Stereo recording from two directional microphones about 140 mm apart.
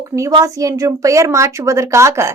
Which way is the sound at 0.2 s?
25° right (ahead or behind).